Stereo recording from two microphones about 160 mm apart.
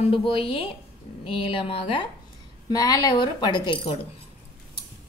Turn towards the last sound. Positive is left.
turn(degrees=30)  # may be behind; listen again after turning